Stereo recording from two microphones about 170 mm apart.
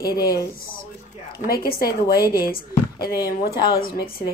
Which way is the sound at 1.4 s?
60° left (ahead or behind).